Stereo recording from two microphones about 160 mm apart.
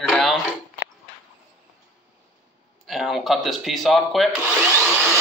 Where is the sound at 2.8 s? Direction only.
Centre (ahead or behind).